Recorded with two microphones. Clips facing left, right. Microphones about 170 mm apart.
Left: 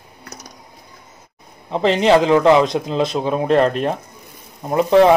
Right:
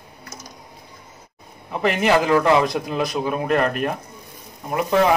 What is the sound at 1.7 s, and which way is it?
Speech, 25° left (ahead or behind).